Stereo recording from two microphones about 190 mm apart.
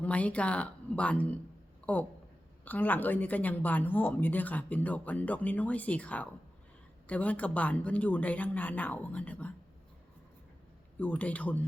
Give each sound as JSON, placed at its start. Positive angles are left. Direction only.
{"t": 0.0, "sound": "speech", "side_deg": 5}
{"t": 11.0, "sound": "speech", "side_deg": 10}